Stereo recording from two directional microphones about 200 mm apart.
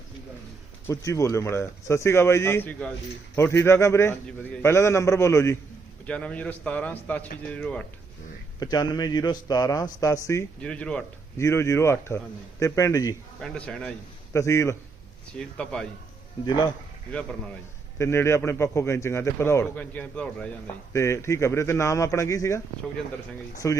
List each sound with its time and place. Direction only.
0.9 s a man's voice: 15° left (ahead or behind)
8.5 s a man's voice: 20° left (ahead or behind)
13.4 s a man's voice: 5° left (ahead or behind)
15.4 s a man's voice: 5° left (ahead or behind)
16.5 s a man's voice: 20° left (ahead or behind)
17.1 s a man's voice: 5° left (ahead or behind)
23.6 s a man's voice: 15° left (ahead or behind)